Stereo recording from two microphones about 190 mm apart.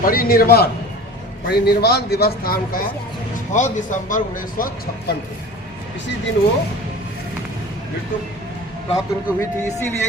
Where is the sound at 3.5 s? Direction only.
40° left (ahead or behind).